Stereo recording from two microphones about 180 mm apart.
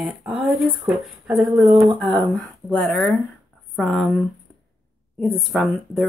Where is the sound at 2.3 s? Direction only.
5° left (ahead or behind).